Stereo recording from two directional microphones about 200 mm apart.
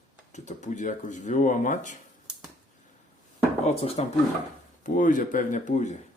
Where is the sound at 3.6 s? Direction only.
30° left (ahead or behind).